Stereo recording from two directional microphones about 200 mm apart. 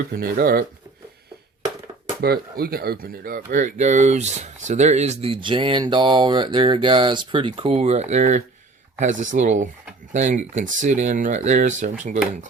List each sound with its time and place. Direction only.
0.2 s speech: 45° right (ahead or behind)
2.2 s speech: 50° right (ahead or behind)